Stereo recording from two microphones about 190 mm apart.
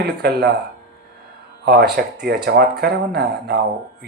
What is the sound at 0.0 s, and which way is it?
Speech, 60° right (ahead or behind).